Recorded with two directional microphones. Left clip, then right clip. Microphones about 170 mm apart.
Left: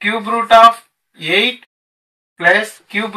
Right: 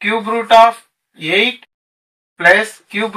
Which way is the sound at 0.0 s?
10° right (ahead or behind).